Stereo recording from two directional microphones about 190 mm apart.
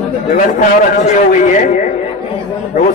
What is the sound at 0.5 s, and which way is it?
A man's voice, 40° left (ahead or behind).